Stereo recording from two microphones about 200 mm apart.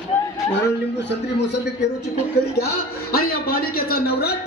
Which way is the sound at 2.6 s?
50° left (ahead or behind).